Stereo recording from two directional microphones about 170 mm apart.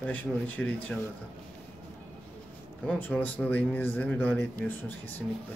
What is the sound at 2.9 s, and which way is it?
A man's voice, 10° left (ahead or behind).